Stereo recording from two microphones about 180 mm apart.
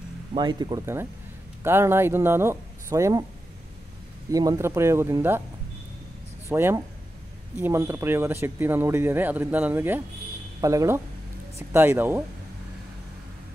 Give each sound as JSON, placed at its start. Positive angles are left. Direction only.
{"t": 0.3, "sound": "speech", "side_deg": -25}
{"t": 4.3, "sound": "speech", "side_deg": -20}
{"t": 6.5, "sound": "speech", "side_deg": -15}